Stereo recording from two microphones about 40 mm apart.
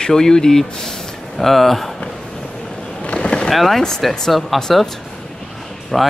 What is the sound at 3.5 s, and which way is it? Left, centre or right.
Speech, centre.